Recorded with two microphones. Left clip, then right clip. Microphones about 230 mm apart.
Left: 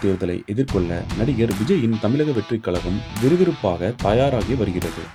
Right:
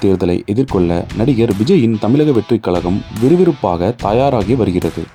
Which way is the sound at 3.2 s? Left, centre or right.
Centre.